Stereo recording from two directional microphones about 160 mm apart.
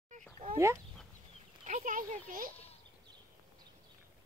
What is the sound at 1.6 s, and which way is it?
Speech, 60° right (ahead or behind).